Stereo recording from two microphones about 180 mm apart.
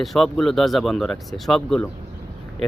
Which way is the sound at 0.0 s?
Centre (ahead or behind).